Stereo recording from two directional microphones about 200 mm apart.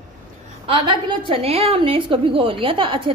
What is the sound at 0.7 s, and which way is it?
A woman's voice, 25° right (ahead or behind).